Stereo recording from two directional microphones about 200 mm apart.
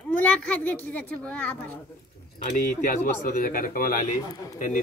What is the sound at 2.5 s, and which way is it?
Speech, 45° left (ahead or behind).